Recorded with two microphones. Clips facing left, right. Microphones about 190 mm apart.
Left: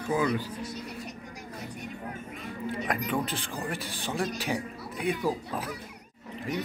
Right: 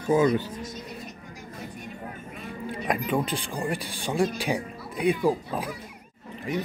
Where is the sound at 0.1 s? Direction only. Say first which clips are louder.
Right 6 dB; 25° right (ahead or behind).